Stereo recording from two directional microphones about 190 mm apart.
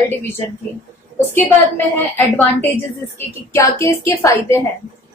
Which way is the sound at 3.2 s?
15° left (ahead or behind).